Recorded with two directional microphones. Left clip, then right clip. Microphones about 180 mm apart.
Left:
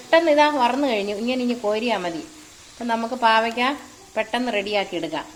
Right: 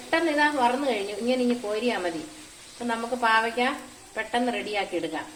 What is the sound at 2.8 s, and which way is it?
A woman's voice, 50° left (ahead or behind).